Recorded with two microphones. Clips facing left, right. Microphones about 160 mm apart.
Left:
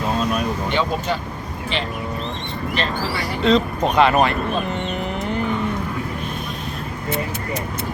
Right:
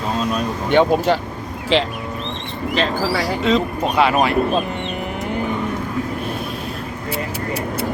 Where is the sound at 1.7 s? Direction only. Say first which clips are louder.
Right 9 dB; 90° right.